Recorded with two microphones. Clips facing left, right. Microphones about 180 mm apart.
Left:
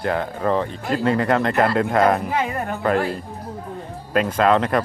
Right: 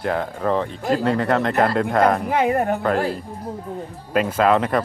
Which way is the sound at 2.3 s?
55° right (ahead or behind).